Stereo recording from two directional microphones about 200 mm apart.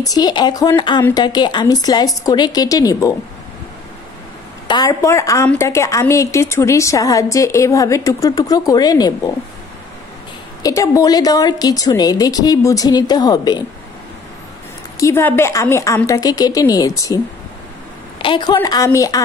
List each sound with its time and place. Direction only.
0.0 s a woman's voice: 20° left (ahead or behind)
4.6 s a woman's voice: 20° left (ahead or behind)
10.6 s a woman's voice: 15° left (ahead or behind)
15.0 s a woman's voice: 15° left (ahead or behind)
18.2 s a woman's voice: 25° left (ahead or behind)